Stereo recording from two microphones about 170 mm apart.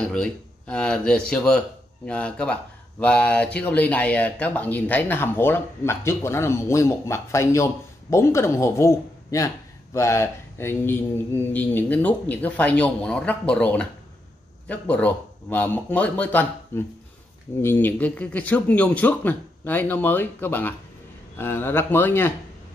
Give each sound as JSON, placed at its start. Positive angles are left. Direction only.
{"t": 0.0, "sound": "a man's voice", "side_deg": 5}